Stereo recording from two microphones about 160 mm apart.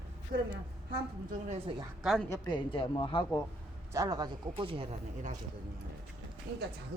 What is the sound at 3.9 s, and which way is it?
Speech, 20° right (ahead or behind).